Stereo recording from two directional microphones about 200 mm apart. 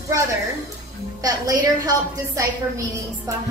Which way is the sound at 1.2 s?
20° right (ahead or behind).